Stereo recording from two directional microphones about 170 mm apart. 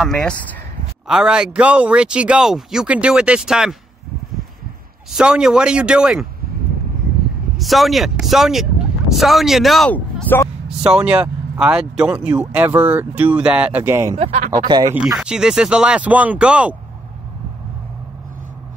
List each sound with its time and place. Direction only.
0.0 s speech: 5° left (ahead or behind)
1.0 s speech: 5° right (ahead or behind)
5.1 s speech: 5° right (ahead or behind)
7.5 s speech: centre (ahead or behind)
10.8 s speech: 5° right (ahead or behind)
14.1 s speech: 45° right (ahead or behind)
14.7 s speech: 25° right (ahead or behind)
15.1 s speech: 5° right (ahead or behind)